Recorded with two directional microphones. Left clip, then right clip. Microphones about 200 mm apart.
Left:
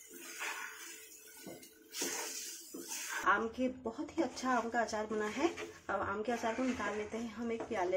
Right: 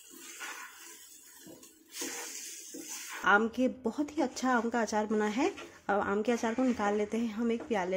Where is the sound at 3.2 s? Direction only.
50° right (ahead or behind).